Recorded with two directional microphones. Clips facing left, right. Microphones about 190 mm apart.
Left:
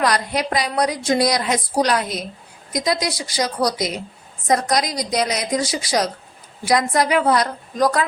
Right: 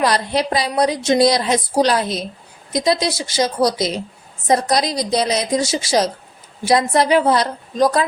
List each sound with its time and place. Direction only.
0.0 s a woman's voice: 30° right (ahead or behind)